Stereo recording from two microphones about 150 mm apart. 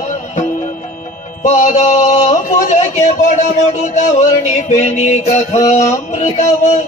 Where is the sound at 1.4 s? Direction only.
50° left (ahead or behind).